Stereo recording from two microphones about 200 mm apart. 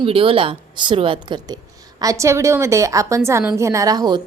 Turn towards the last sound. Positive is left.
turn(degrees=-20)  # may be behind; listen again after turning